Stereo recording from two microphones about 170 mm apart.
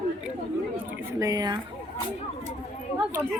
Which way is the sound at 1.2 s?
20° right (ahead or behind).